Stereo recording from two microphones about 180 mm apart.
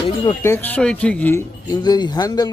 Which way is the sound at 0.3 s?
15° left (ahead or behind).